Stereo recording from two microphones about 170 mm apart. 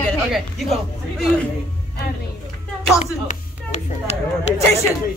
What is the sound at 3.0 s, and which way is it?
Speech, 40° left (ahead or behind).